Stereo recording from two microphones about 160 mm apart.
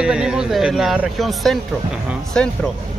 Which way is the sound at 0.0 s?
5° right (ahead or behind).